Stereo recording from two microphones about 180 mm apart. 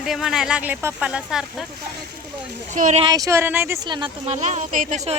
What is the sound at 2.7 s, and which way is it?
Speech, 40° right (ahead or behind).